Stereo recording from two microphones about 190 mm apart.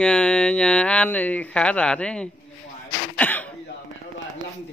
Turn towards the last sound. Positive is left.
turn(degrees=10)  # may be behind; listen again after turning